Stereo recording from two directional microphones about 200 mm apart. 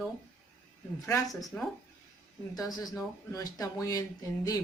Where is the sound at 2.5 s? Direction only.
15° left (ahead or behind).